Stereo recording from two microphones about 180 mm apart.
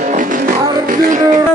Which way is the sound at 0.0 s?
45° right (ahead or behind).